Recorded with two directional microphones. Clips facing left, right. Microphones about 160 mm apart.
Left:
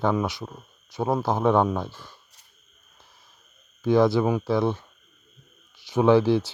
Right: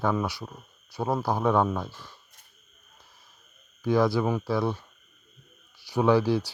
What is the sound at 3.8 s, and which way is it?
Speech, 25° left (ahead or behind).